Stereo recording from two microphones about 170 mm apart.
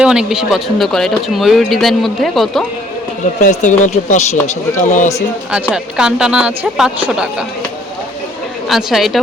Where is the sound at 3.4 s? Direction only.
45° left (ahead or behind).